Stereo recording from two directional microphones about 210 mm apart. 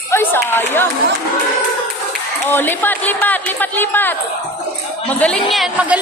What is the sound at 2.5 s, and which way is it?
A woman's voice, 10° left (ahead or behind).